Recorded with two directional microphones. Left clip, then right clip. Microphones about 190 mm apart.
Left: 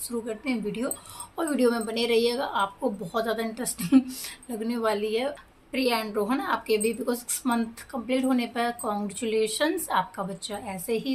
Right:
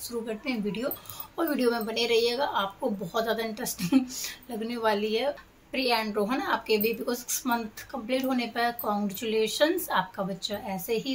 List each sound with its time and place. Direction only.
0.3 s speech: 10° left (ahead or behind)